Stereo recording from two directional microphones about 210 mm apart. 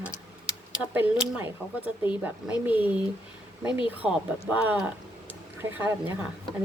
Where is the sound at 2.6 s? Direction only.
5° right (ahead or behind).